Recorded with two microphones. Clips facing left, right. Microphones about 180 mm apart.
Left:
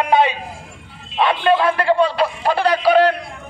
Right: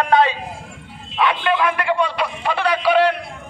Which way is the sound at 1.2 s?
30° left (ahead or behind).